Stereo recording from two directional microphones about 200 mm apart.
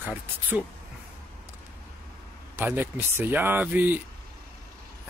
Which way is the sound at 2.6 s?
10° right (ahead or behind).